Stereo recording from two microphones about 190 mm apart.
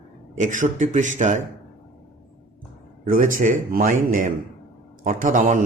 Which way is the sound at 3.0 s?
45° right (ahead or behind).